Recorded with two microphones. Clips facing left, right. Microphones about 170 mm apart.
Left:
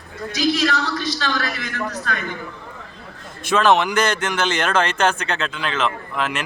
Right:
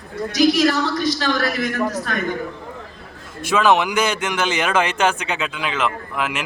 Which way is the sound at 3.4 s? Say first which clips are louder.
Even; 10° right (ahead or behind).